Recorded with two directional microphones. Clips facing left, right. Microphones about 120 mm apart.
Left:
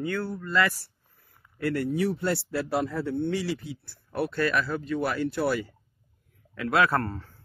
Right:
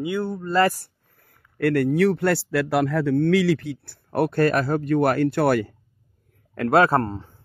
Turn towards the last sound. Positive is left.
turn(degrees=-20)  # may be behind; listen again after turning